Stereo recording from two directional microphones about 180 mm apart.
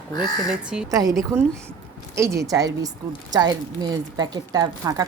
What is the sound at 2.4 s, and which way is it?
A woman's voice, 20° right (ahead or behind).